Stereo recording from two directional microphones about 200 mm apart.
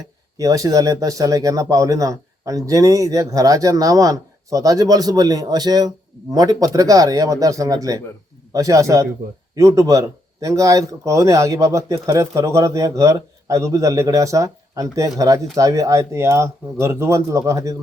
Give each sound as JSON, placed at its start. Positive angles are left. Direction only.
{"t": 0.3, "sound": "speech", "side_deg": -15}